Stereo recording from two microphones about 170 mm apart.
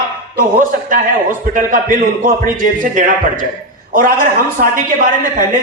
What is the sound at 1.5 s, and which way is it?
A man's voice, 55° right (ahead or behind).